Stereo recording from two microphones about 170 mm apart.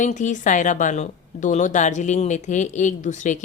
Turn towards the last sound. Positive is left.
turn(degrees=45)  # may be behind; listen again after turning